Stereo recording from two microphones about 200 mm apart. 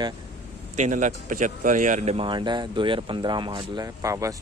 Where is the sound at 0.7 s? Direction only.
35° right (ahead or behind).